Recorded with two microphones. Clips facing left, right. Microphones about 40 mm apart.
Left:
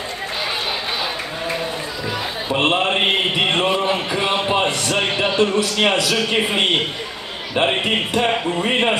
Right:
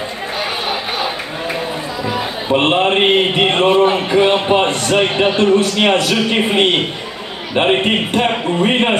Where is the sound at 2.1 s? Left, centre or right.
Right.